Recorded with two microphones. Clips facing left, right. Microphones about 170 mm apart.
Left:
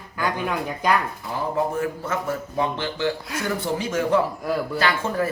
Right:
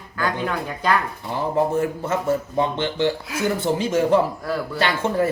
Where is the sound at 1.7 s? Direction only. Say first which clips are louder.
Right 4 dB; 25° right (ahead or behind).